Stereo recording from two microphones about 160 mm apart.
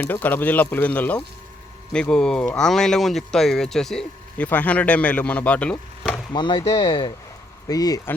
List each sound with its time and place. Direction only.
0.0 s speech: 10° left (ahead or behind)
6.3 s speech: 30° left (ahead or behind)